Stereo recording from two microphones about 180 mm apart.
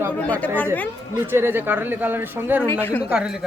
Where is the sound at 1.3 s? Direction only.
10° right (ahead or behind).